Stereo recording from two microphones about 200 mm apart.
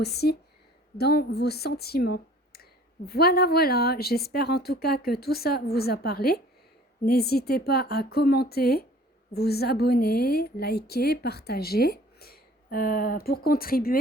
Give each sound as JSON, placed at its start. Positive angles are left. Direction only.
{"t": 0.0, "sound": "a woman's voice", "side_deg": 55}